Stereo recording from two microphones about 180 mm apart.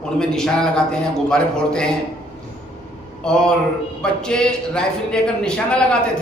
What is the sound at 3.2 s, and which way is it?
A woman's voice, 5° left (ahead or behind).